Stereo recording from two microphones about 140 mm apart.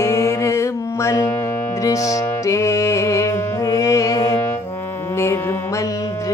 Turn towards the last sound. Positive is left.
turn(degrees=25)  # may be behind; listen again after turning